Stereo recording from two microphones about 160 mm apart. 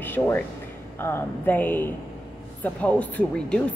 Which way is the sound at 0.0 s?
10° left (ahead or behind).